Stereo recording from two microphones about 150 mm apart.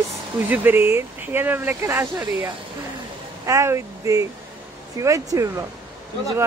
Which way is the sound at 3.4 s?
20° right (ahead or behind).